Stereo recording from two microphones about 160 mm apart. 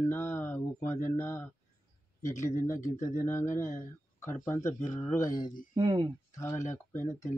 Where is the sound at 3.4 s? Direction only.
50° left (ahead or behind).